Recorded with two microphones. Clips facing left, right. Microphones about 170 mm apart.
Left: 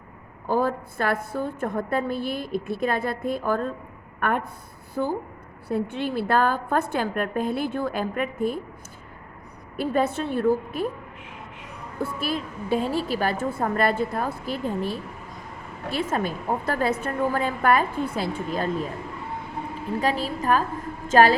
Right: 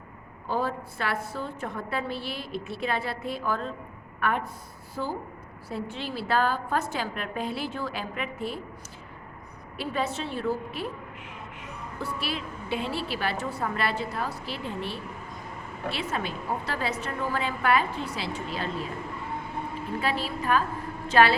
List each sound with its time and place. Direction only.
0.4 s a woman's voice: 50° left (ahead or behind)
9.7 s a woman's voice: 50° left (ahead or behind)
11.9 s a woman's voice: 50° left (ahead or behind)
20.0 s a woman's voice: 40° left (ahead or behind)